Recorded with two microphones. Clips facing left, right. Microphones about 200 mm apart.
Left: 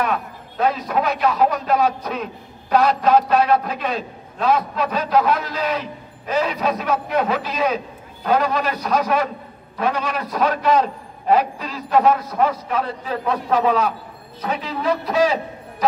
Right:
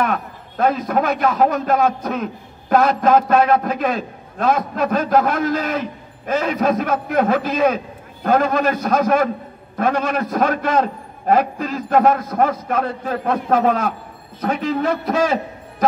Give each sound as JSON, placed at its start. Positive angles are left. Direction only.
{"t": 0.0, "sound": "a man's voice", "side_deg": -50}